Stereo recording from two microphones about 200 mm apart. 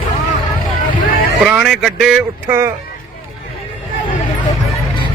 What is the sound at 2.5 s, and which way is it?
Speech, 10° right (ahead or behind).